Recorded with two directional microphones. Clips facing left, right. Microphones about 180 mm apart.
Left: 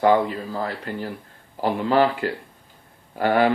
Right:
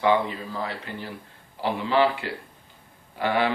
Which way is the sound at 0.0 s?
45° left (ahead or behind).